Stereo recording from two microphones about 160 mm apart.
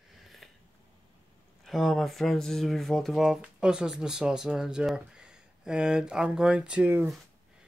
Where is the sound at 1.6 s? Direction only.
Centre (ahead or behind).